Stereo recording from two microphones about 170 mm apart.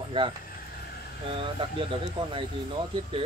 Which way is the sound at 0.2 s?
30° right (ahead or behind).